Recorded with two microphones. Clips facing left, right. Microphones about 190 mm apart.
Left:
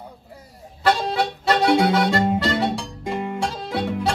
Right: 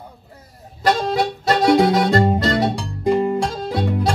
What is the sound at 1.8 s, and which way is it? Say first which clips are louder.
Music: right 3 dB; 40° right (ahead or behind).